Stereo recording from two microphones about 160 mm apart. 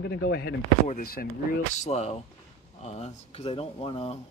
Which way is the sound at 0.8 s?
60° left (ahead or behind).